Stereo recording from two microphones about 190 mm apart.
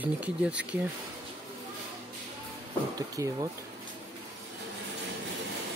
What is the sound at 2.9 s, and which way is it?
Speech, 20° right (ahead or behind).